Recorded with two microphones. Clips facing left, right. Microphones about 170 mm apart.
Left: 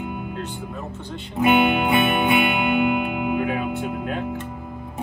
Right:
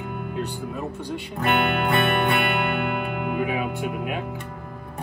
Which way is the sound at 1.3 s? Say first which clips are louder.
Left 6 dB; centre (ahead or behind).